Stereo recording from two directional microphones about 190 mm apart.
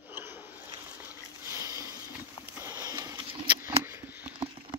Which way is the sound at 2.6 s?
15° right (ahead or behind).